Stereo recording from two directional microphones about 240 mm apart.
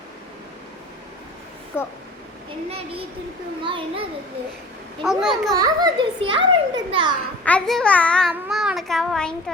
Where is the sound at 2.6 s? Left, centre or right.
Right.